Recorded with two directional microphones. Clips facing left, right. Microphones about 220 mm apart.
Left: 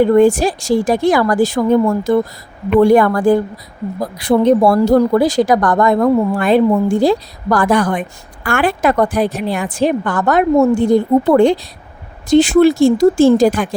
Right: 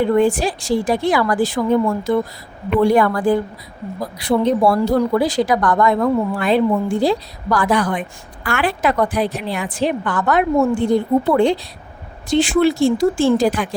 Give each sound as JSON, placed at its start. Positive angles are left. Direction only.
{"t": 0.0, "sound": "speech", "side_deg": 45}